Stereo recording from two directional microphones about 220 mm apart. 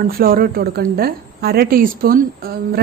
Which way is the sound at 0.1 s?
40° right (ahead or behind).